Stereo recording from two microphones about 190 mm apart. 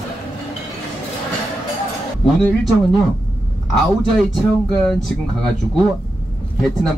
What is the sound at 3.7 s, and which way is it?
Speech, centre (ahead or behind).